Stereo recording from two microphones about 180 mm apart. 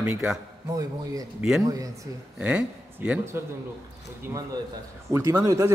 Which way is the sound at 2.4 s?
5° right (ahead or behind).